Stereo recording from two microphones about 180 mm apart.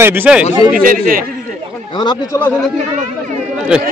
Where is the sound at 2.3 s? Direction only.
10° left (ahead or behind).